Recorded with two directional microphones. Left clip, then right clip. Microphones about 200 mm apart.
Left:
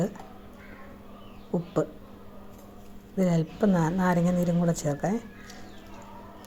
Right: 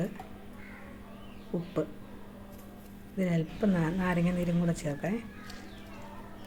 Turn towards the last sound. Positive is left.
turn(degrees=20)  # may be behind; listen again after turning